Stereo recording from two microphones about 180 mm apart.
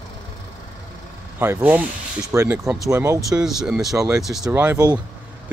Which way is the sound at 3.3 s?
Centre (ahead or behind).